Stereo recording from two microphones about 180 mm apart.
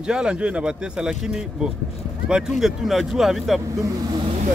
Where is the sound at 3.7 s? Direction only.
20° right (ahead or behind).